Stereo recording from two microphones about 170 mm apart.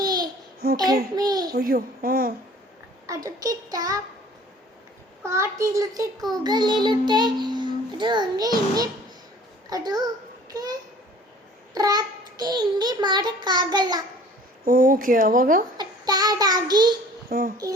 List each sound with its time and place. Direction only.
0.0 s babbling: 25° right (ahead or behind)
0.6 s a sound: 60° right (ahead or behind)
1.1 s child singing: 25° right (ahead or behind)
1.5 s speech: 60° right (ahead or behind)
3.1 s child singing: 20° right (ahead or behind)
5.2 s child singing: 15° right (ahead or behind)
10.5 s a child's voice: 20° right (ahead or behind)
11.7 s child singing: 20° right (ahead or behind)
14.6 s speech: 60° right (ahead or behind)
15.8 s child singing: 25° right (ahead or behind)
17.2 s a sound: 60° right (ahead or behind)